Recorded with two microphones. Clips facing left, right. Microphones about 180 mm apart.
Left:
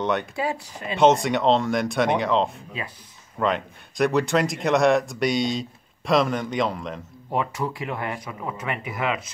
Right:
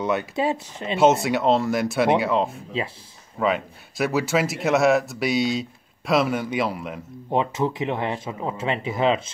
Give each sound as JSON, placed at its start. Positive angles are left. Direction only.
{"t": 0.0, "sound": "speech", "side_deg": -5}
{"t": 0.4, "sound": "speech", "side_deg": -25}
{"t": 0.9, "sound": "speech", "side_deg": -5}
{"t": 7.2, "sound": "speech", "side_deg": -25}